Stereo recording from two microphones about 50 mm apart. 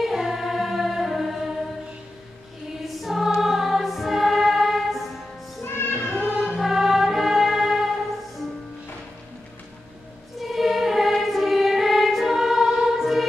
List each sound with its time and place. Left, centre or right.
0.0 s music: centre
2.8 s choir: centre
5.6 s music: left
6.3 s music: centre
10.4 s choir: centre
13.0 s music: centre